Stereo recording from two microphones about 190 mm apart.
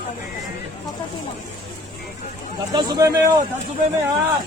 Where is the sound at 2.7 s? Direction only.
20° right (ahead or behind).